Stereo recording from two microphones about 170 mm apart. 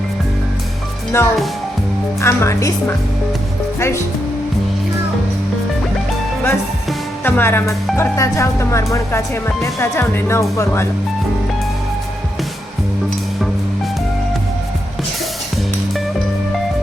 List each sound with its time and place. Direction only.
1.1 s speech: 15° left (ahead or behind)
7.3 s speech: 10° left (ahead or behind)